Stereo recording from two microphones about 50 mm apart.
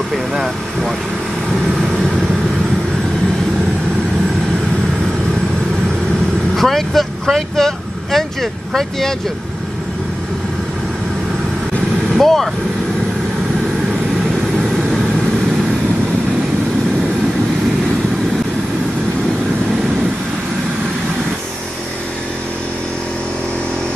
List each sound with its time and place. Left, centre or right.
0.1 s speech: centre
6.5 s speech: centre
12.2 s speech: centre